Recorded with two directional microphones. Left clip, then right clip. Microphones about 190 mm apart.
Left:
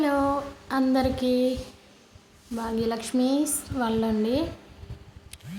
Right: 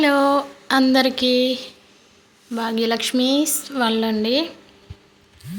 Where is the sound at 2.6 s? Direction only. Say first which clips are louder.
Right 7 dB; 20° right (ahead or behind).